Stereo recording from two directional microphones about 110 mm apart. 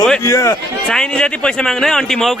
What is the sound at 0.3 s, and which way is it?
Speech, 25° left (ahead or behind).